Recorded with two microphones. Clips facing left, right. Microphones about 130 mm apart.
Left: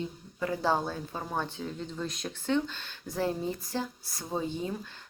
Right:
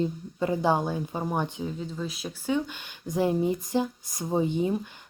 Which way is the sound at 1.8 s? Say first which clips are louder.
Right 2 dB; 5° right (ahead or behind).